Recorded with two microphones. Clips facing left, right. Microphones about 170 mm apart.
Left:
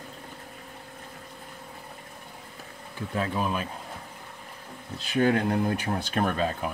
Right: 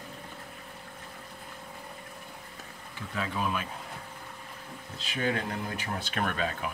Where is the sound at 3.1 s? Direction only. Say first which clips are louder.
Left 4 dB; 40° left (ahead or behind).